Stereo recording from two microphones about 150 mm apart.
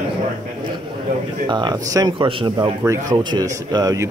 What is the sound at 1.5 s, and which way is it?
Speech, 30° right (ahead or behind).